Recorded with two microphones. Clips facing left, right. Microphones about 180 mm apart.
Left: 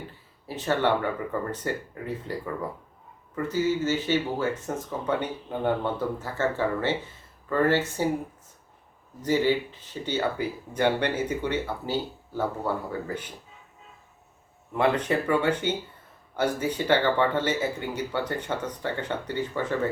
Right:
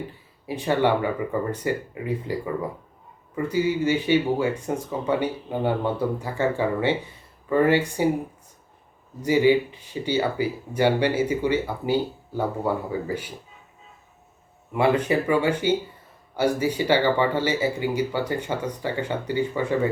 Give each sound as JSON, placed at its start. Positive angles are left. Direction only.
{"t": 0.4, "sound": "speech", "side_deg": -15}
{"t": 9.2, "sound": "speech", "side_deg": -10}
{"t": 14.7, "sound": "speech", "side_deg": -10}